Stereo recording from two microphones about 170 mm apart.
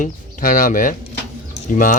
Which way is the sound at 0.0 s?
50° left (ahead or behind).